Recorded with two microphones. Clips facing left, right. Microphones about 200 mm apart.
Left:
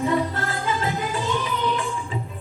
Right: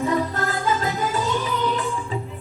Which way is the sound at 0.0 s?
40° right (ahead or behind).